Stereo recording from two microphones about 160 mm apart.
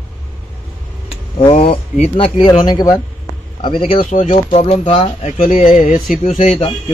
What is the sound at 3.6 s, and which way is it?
Speech, 35° left (ahead or behind).